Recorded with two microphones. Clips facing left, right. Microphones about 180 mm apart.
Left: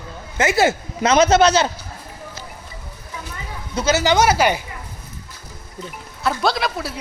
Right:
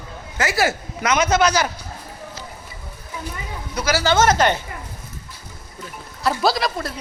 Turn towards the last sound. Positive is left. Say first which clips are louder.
# right 1 dB
turn(degrees=0)  # may be behind; listen again after turning